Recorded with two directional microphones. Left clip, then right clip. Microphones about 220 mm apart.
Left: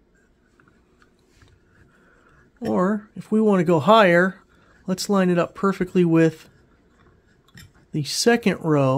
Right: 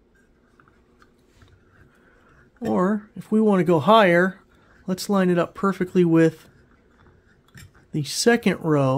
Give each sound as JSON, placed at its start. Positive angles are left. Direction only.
{"t": 2.6, "sound": "speech", "side_deg": 0}
{"t": 7.9, "sound": "speech", "side_deg": 0}